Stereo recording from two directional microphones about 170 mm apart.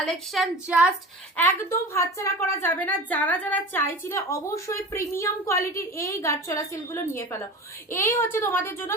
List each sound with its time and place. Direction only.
0.0 s a woman's voice: centre (ahead or behind)
1.4 s a woman's voice: 10° left (ahead or behind)